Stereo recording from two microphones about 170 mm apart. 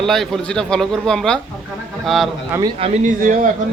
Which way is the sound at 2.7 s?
40° right (ahead or behind).